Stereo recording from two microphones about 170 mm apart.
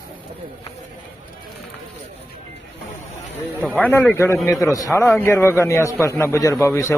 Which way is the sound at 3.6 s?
10° left (ahead or behind).